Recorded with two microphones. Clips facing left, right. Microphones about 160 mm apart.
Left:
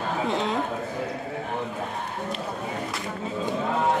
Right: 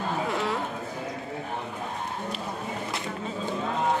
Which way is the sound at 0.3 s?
20° left (ahead or behind).